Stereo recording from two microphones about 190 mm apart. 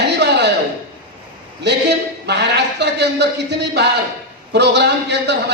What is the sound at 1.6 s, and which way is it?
A man's voice, 65° right (ahead or behind).